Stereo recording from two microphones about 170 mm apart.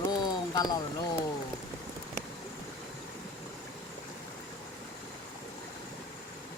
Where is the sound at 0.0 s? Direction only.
25° left (ahead or behind).